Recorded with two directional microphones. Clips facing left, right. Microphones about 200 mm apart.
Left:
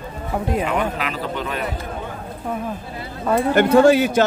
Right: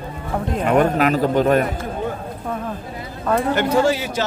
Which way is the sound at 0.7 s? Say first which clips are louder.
Right 7 dB; 45° right (ahead or behind).